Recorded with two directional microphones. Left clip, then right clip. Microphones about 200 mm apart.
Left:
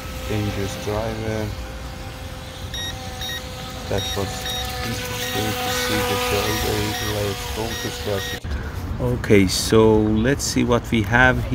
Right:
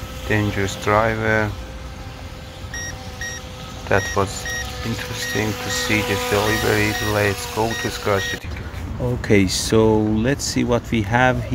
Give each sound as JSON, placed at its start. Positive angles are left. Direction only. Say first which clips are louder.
{"t": 0.3, "sound": "speech", "louder": "right 6 dB", "side_deg": 5}
{"t": 0.9, "sound": "speech", "louder": "right 10 dB", "side_deg": -10}
{"t": 4.3, "sound": "speech", "louder": "even", "side_deg": 20}
{"t": 5.9, "sound": "speech", "louder": "right 4 dB", "side_deg": 10}
{"t": 6.1, "sound": "speech", "louder": "right 2 dB", "side_deg": -10}